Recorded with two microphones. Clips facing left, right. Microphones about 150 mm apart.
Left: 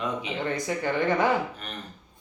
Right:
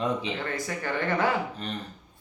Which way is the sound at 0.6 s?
15° left (ahead or behind).